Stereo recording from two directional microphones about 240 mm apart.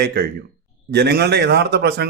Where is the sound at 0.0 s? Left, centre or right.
Right.